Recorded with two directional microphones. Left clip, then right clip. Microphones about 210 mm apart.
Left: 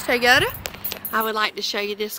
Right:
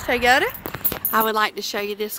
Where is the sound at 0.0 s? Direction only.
Centre (ahead or behind).